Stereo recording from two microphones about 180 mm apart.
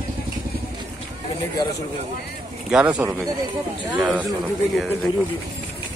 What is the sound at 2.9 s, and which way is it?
Speech, 20° right (ahead or behind).